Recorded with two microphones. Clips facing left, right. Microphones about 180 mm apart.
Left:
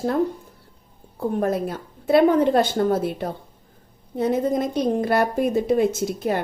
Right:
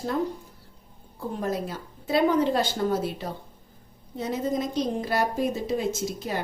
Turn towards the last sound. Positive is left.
turn(degrees=55)  # may be behind; listen again after turning